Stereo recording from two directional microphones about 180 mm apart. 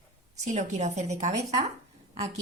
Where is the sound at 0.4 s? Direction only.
40° right (ahead or behind).